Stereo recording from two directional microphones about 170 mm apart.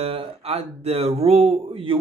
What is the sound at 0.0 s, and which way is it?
Speech, 35° right (ahead or behind).